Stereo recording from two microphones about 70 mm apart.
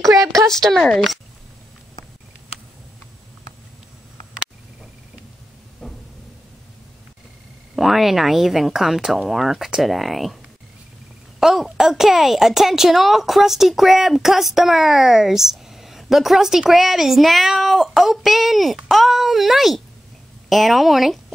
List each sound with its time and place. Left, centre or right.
0.0 s a sound: right
0.5 s speech: centre
7.7 s speech: centre
11.3 s speech: centre